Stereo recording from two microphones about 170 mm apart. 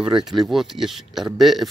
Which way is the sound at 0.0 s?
5° right (ahead or behind).